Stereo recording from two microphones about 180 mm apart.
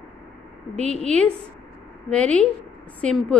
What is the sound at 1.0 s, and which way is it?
A woman's voice, 5° left (ahead or behind).